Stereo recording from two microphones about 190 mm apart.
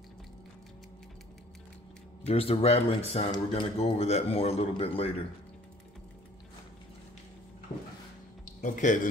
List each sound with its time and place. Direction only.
2.2 s a man's voice: 30° left (ahead or behind)
8.5 s speech: 40° left (ahead or behind)